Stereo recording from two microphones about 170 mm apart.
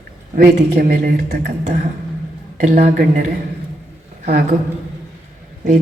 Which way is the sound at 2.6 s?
55° right (ahead or behind).